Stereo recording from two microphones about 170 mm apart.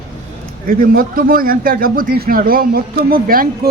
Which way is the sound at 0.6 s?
55° right (ahead or behind).